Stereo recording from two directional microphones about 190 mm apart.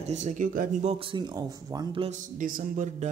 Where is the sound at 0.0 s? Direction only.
40° right (ahead or behind).